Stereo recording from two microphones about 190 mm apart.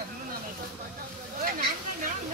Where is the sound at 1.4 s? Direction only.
45° right (ahead or behind).